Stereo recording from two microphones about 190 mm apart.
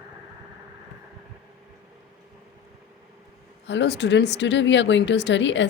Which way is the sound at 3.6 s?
65° left (ahead or behind).